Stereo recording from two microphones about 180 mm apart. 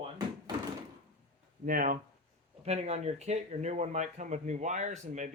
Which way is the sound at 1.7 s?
50° right (ahead or behind).